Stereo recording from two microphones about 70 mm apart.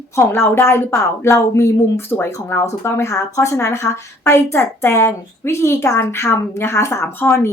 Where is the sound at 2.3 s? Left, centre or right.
Left.